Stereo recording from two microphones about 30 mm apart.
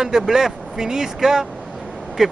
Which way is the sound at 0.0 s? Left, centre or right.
Centre.